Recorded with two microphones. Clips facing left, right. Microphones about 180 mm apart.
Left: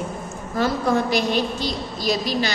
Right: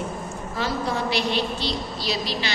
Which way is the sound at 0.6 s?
50° left (ahead or behind).